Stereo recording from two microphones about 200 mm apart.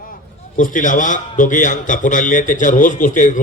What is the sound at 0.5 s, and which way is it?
A man's voice, 40° left (ahead or behind).